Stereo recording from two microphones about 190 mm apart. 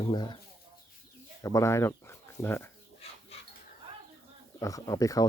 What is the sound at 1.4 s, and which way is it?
Speech, 15° left (ahead or behind).